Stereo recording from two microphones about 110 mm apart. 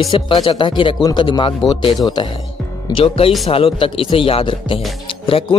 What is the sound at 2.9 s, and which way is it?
Speech, 55° left (ahead or behind).